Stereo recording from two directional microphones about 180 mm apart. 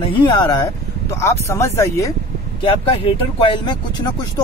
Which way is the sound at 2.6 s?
30° left (ahead or behind).